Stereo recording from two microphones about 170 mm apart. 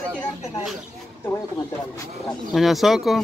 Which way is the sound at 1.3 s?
20° left (ahead or behind).